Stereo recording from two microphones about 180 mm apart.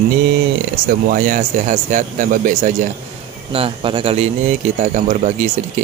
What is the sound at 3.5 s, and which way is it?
Speech, 30° right (ahead or behind).